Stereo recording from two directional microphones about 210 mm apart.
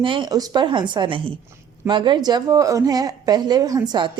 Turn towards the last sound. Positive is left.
turn(degrees=-20)  # may be behind; listen again after turning